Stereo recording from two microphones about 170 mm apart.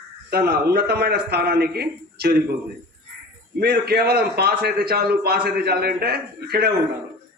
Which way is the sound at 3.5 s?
65° right (ahead or behind).